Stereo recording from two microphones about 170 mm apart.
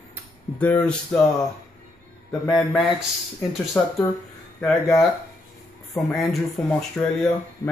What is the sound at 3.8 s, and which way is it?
Speech, 10° left (ahead or behind).